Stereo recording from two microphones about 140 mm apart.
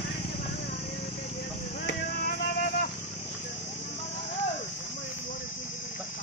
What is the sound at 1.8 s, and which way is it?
Music, 75° left (ahead or behind).